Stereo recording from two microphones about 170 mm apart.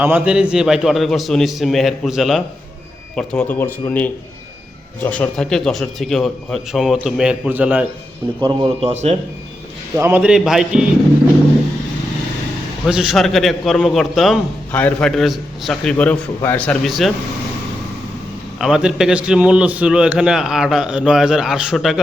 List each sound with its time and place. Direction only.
0.0 s a man's voice: 10° right (ahead or behind)
3.2 s a man's voice: 10° left (ahead or behind); by 7.9 s 10° right (ahead or behind)
8.4 s a man's voice: 25° right (ahead or behind)
8.9 s speech: 40° right (ahead or behind)
9.9 s a man's voice: 10° right (ahead or behind)
12.9 s a man's voice: 5° right (ahead or behind)
18.6 s a man's voice: 5° right (ahead or behind)